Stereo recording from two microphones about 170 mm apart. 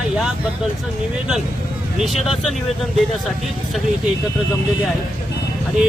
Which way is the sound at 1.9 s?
Centre (ahead or behind).